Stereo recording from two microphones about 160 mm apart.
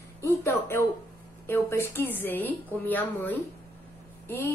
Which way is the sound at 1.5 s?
15° left (ahead or behind).